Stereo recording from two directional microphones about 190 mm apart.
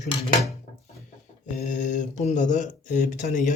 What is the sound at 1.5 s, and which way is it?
Speech, 40° left (ahead or behind).